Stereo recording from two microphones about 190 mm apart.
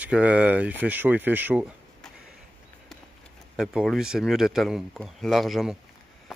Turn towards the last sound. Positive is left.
turn(degrees=0)  # may be behind; listen again after turning